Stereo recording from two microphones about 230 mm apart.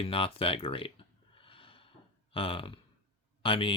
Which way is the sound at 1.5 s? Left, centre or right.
Left.